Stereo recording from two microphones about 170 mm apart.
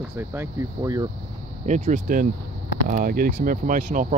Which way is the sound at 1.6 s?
45° right (ahead or behind).